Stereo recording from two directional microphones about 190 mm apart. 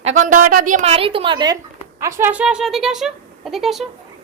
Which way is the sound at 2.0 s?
15° right (ahead or behind).